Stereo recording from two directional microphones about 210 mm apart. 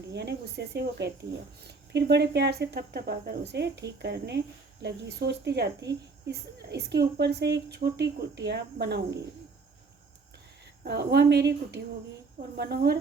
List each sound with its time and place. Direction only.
0.1 s speech: 55° right (ahead or behind)
10.8 s speech: 50° right (ahead or behind)